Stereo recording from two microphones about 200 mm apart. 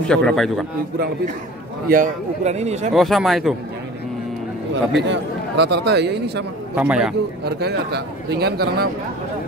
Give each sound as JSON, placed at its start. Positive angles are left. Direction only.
{"t": 0.1, "sound": "speech", "side_deg": 5}
{"t": 1.9, "sound": "a man's voice", "side_deg": -40}
{"t": 2.9, "sound": "speech", "side_deg": 0}
{"t": 5.0, "sound": "speech", "side_deg": -60}
{"t": 6.7, "sound": "speech", "side_deg": -5}
{"t": 7.4, "sound": "speech", "side_deg": -55}